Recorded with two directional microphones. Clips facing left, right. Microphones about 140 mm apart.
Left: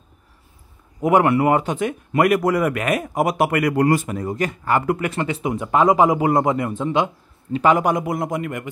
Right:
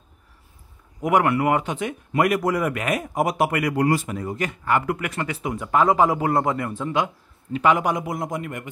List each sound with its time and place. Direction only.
1.0 s speech: 25° left (ahead or behind)
1.8 s a man's voice: 55° left (ahead or behind); by 7.1 s 25° left (ahead or behind)
7.5 s a man's voice: 40° left (ahead or behind); by 8.6 s 90° left